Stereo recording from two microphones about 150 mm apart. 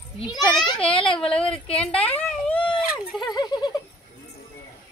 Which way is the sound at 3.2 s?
30° left (ahead or behind).